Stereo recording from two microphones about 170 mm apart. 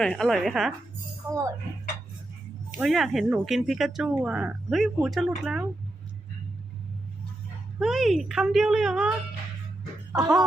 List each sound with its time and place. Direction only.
0.0 s a woman's voice: centre (ahead or behind)
2.7 s a woman's voice: centre (ahead or behind)
7.8 s a woman's voice: centre (ahead or behind)
10.1 s speech: 20° right (ahead or behind)